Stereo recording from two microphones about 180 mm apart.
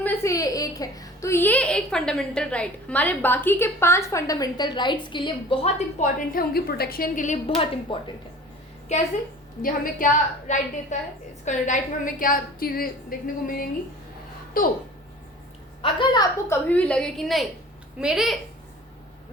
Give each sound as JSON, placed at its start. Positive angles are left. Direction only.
{"t": 0.0, "sound": "a woman's voice", "side_deg": 15}
{"t": 6.0, "sound": "a woman's voice", "side_deg": 50}
{"t": 7.4, "sound": "speech", "side_deg": 30}
{"t": 9.6, "sound": "a woman's voice", "side_deg": 50}
{"t": 15.8, "sound": "a woman's voice", "side_deg": 30}
{"t": 16.5, "sound": "a woman's voice", "side_deg": 10}